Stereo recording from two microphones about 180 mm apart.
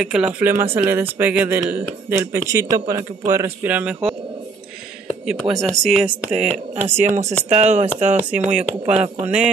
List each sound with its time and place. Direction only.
0.0 s speech: 5° right (ahead or behind)
5.2 s speech: centre (ahead or behind)
6.3 s speech: 35° right (ahead or behind)
8.3 s speech: 5° right (ahead or behind)
8.9 s speech: 40° right (ahead or behind)